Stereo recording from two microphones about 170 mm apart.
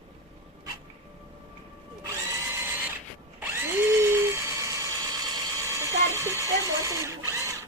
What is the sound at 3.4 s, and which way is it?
Drill, 15° right (ahead or behind).